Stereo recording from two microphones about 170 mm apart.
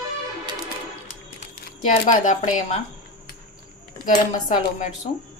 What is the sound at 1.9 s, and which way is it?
Speech, 40° left (ahead or behind).